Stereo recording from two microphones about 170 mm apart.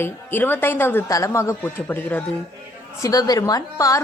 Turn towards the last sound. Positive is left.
turn(degrees=20)  # may be behind; listen again after turning